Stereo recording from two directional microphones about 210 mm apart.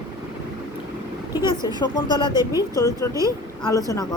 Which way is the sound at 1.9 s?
20° left (ahead or behind).